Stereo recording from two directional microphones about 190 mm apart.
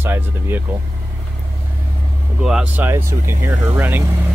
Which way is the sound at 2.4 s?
5° right (ahead or behind).